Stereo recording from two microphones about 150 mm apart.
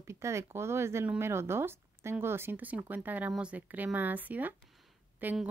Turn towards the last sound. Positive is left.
turn(degrees=-10)  # may be behind; listen again after turning